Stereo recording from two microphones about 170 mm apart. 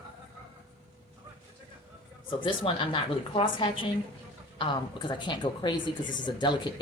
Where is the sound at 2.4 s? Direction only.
30° left (ahead or behind).